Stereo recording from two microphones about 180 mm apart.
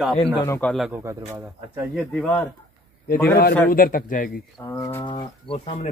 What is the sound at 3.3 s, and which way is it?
Speech, 55° left (ahead or behind).